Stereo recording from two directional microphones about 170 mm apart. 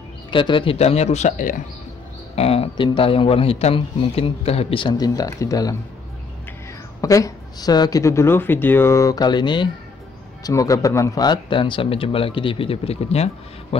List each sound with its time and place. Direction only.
0.3 s a man's voice: 30° left (ahead or behind); by 1.6 s 45° left (ahead or behind)
2.3 s a man's voice: 35° left (ahead or behind)
7.0 s a man's voice: 20° left (ahead or behind); by 13.7 s 40° left (ahead or behind)